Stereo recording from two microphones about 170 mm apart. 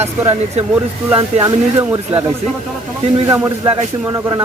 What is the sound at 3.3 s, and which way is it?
Speech, 20° right (ahead or behind).